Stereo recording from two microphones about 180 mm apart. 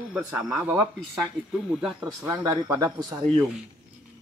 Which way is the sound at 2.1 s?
20° right (ahead or behind).